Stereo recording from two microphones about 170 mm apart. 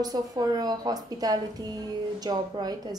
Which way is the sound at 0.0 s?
25° right (ahead or behind).